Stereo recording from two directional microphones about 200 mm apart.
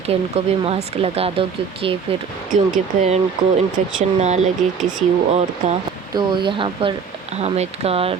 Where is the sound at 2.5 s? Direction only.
40° right (ahead or behind).